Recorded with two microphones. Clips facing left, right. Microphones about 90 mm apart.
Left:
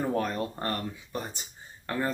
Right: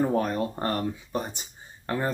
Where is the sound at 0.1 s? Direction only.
20° right (ahead or behind).